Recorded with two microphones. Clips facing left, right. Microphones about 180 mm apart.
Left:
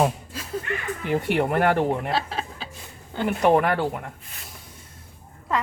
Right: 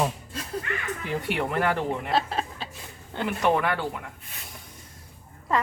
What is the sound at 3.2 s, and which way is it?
Speech, 40° left (ahead or behind).